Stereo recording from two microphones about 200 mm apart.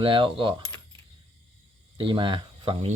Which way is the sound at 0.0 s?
25° right (ahead or behind).